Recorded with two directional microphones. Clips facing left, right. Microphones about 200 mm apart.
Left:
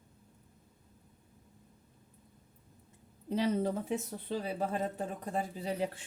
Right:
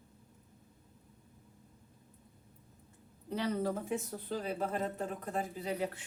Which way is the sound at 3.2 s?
20° left (ahead or behind).